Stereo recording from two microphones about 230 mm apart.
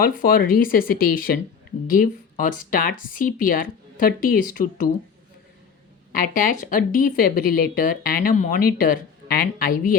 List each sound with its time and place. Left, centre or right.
0.0 s speech: left
6.1 s speech: left